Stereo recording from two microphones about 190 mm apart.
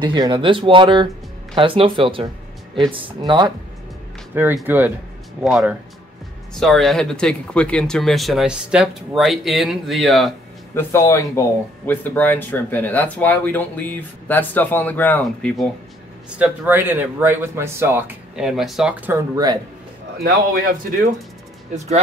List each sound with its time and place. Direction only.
0.0 s speech: 25° right (ahead or behind)
4.3 s speech: 10° right (ahead or behind)
10.7 s speech: 10° left (ahead or behind)
16.3 s speech: 10° right (ahead or behind)
20.2 s a man's voice: 45° right (ahead or behind)
21.7 s speech: 35° right (ahead or behind)